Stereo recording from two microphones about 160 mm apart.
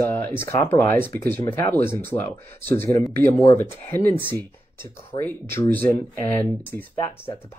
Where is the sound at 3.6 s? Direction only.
10° left (ahead or behind).